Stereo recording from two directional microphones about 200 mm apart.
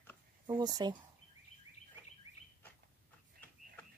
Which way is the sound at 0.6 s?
20° right (ahead or behind).